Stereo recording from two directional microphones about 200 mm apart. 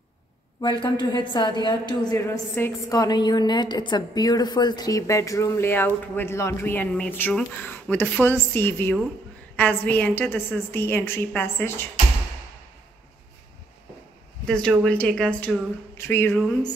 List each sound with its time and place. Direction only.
0.6 s a woman's voice: 25° left (ahead or behind)
14.4 s speech: 5° left (ahead or behind)